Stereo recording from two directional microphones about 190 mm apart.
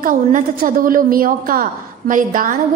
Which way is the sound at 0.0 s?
45° right (ahead or behind).